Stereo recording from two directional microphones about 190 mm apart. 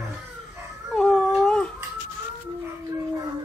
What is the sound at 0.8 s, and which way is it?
Dog, centre (ahead or behind).